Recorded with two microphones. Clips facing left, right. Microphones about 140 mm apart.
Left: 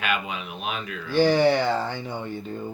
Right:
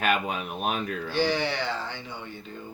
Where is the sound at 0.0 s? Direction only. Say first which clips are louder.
Right 2 dB; 45° right (ahead or behind).